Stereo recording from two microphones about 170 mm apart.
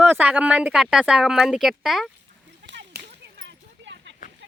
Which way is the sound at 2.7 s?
90° right.